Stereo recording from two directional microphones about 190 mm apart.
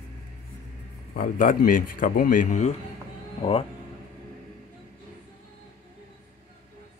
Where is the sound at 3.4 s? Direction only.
30° left (ahead or behind).